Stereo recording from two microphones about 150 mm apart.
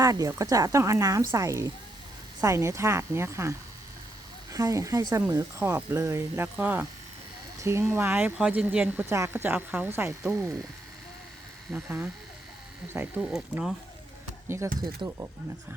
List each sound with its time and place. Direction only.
0.0 s speech: 25° right (ahead or behind)
4.5 s speech: 20° right (ahead or behind)
11.7 s speech: 10° right (ahead or behind)
13.3 s speech: centre (ahead or behind)
14.4 s speech: 15° right (ahead or behind)